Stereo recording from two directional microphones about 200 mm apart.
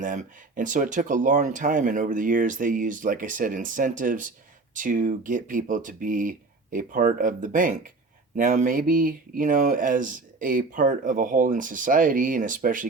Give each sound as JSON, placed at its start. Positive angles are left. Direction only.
{"t": 0.0, "sound": "speech", "side_deg": -40}